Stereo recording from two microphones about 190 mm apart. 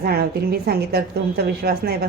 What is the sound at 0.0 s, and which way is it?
A woman's voice, 55° right (ahead or behind).